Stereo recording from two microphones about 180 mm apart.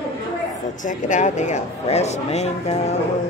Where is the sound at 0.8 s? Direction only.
45° left (ahead or behind).